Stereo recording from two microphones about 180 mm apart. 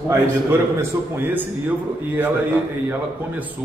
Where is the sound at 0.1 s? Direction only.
15° right (ahead or behind).